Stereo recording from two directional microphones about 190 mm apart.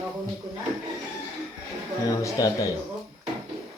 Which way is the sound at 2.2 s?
15° left (ahead or behind).